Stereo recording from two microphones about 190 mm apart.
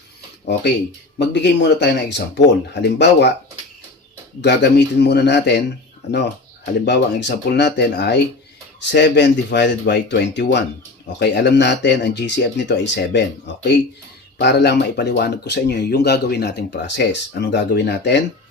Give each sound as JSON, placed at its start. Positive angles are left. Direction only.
{"t": 1.3, "sound": "speech", "side_deg": 65}
{"t": 4.4, "sound": "speech", "side_deg": 65}